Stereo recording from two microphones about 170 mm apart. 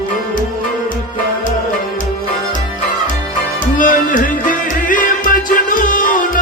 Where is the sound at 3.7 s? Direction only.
50° left (ahead or behind).